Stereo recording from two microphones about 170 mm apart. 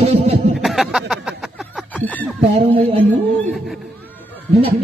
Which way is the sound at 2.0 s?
10° left (ahead or behind).